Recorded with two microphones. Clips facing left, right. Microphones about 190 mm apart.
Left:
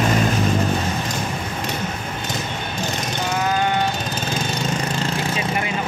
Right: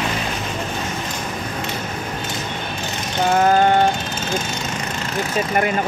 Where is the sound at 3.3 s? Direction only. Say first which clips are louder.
Right 7 dB; 50° right (ahead or behind).